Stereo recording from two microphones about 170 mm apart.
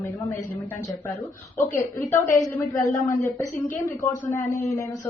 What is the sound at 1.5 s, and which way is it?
Speech, 15° left (ahead or behind).